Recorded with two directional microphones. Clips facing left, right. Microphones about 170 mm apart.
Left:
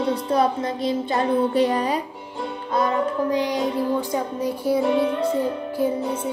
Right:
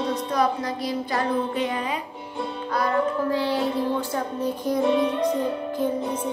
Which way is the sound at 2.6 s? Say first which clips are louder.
Left 2 dB; 20° left (ahead or behind).